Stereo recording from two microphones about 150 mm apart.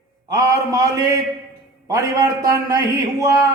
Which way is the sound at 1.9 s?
20° right (ahead or behind).